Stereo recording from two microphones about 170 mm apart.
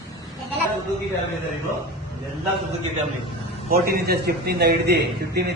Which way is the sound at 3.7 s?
60° right (ahead or behind).